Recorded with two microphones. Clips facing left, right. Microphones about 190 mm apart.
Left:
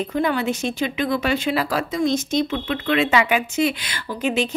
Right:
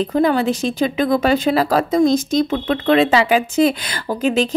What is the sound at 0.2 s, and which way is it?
Speech, 35° right (ahead or behind).